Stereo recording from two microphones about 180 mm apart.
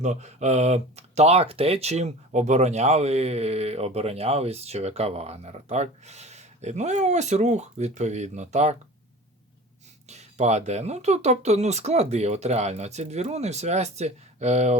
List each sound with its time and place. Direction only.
0.0 s speech: 40° right (ahead or behind)
10.1 s speech: 40° right (ahead or behind)